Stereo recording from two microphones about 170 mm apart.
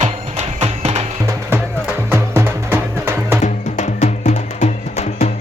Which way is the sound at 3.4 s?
40° left (ahead or behind).